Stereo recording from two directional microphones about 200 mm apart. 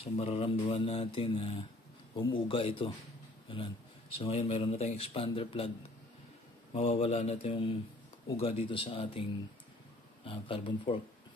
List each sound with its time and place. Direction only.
0.0 s mantra: 30° left (ahead or behind)
3.4 s speech: 25° left (ahead or behind)
4.2 s mantra: 30° left (ahead or behind)
6.7 s speech: 30° left (ahead or behind)
8.4 s mantra: 30° left (ahead or behind)
10.2 s mantra: 25° left (ahead or behind)